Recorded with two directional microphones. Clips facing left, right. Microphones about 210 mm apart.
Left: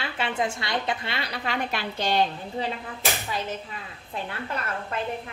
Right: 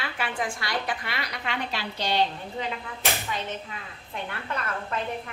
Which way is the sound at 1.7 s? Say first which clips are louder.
Left 1 dB; 50° left (ahead or behind).